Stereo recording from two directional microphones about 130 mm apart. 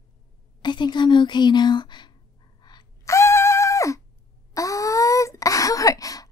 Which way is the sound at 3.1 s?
20° left (ahead or behind).